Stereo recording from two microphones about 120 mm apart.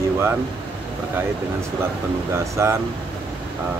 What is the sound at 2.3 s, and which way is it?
Speech, 25° right (ahead or behind).